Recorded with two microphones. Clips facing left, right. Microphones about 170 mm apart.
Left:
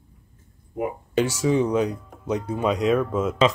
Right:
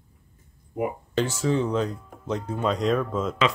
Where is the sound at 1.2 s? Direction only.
10° left (ahead or behind).